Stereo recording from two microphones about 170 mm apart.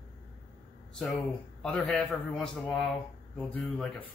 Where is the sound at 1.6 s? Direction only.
5° left (ahead or behind).